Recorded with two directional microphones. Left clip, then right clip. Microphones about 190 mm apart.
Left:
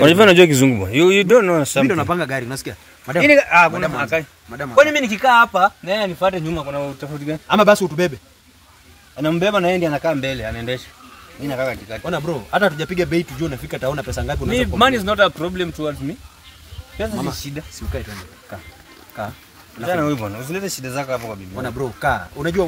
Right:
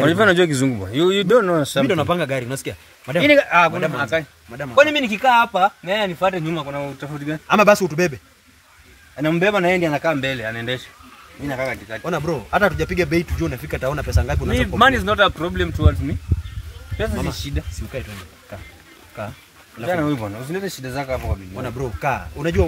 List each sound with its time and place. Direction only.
0.0 s a man's voice: 35° left (ahead or behind)
1.0 s speech: 10° left (ahead or behind)
1.9 s speech: 90° right
3.3 s speech: 10° left (ahead or behind)
4.5 s speech: 20° right (ahead or behind)
4.7 s speech: 15° left (ahead or behind)
6.8 s speech: 25° left (ahead or behind)
7.4 s speech: 15° right (ahead or behind)
9.1 s speech: 15° left (ahead or behind)
11.4 s a man's voice: 35° left (ahead or behind)
12.0 s speech: 10° right (ahead or behind)
14.5 s speech: 30° left (ahead or behind); by 16.2 s 5° left (ahead or behind)
19.9 s speech: 10° left (ahead or behind)
21.6 s speech: 20° right (ahead or behind)